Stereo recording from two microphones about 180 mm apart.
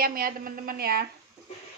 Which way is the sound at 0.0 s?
55° right (ahead or behind).